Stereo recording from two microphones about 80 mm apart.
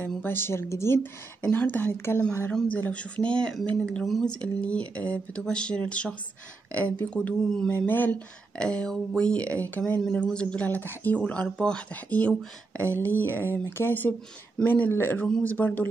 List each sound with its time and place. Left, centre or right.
0.0 s speech: left
1.4 s speech: left
2.8 s speech: centre
4.3 s speech: centre
7.7 s speech: left
8.5 s speech: centre